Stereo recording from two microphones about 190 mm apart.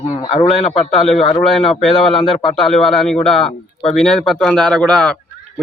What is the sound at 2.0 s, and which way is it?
Speech, 25° left (ahead or behind).